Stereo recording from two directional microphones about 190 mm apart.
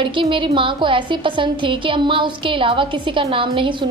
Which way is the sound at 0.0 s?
25° right (ahead or behind).